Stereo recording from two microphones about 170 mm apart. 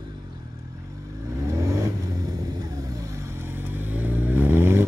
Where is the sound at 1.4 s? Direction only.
20° right (ahead or behind).